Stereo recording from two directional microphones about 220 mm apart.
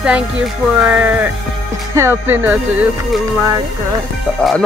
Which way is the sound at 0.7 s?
5° right (ahead or behind).